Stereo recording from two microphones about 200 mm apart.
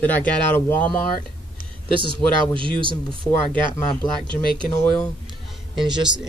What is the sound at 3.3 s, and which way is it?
Speech, 15° left (ahead or behind).